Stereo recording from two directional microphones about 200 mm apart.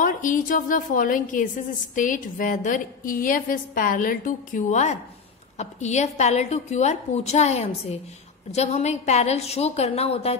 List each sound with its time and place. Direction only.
0.0 s a woman's voice: 40° left (ahead or behind)